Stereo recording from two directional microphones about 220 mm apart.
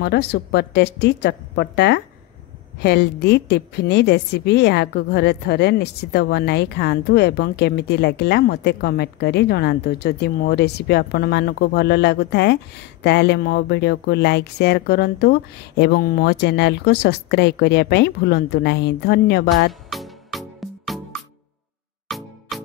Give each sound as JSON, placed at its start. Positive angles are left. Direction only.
{"t": 0.0, "sound": "a woman's voice", "side_deg": 50}
{"t": 19.7, "sound": "music", "side_deg": 0}